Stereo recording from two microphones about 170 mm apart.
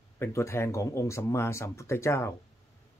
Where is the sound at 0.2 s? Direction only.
15° left (ahead or behind).